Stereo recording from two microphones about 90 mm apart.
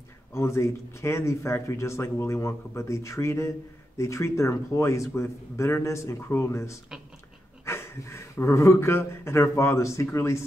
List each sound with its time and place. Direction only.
0.3 s speech: 30° left (ahead or behind)